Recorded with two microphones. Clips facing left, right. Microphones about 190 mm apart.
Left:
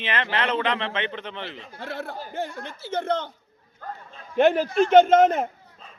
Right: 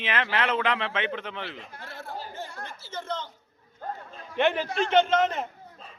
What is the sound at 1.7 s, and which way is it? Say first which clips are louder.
Speech: left 9 dB; 65° left (ahead or behind).